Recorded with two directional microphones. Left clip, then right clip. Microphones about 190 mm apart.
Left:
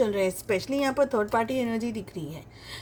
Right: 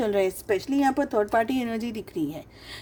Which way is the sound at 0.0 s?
40° right (ahead or behind).